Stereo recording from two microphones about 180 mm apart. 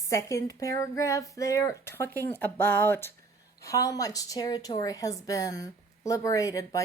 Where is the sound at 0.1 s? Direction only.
20° left (ahead or behind).